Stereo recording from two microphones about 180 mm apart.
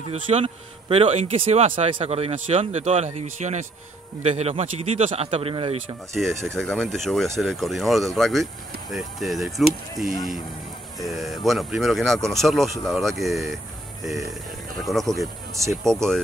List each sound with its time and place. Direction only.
0.1 s speech: 35° right (ahead or behind)
6.1 s speech: centre (ahead or behind)
11.0 s speech: centre (ahead or behind)
14.8 s speech: centre (ahead or behind)